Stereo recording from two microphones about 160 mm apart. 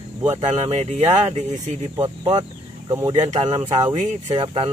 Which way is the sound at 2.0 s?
25° right (ahead or behind).